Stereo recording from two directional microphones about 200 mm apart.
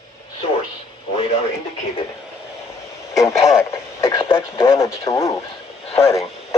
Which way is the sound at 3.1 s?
15° left (ahead or behind).